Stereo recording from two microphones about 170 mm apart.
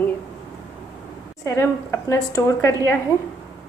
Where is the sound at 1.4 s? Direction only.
15° left (ahead or behind).